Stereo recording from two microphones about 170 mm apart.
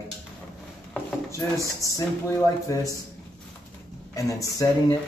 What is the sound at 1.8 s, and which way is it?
Speech, 20° left (ahead or behind).